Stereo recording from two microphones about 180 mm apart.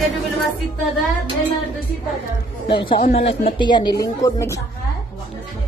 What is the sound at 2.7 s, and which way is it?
Speech, 30° left (ahead or behind).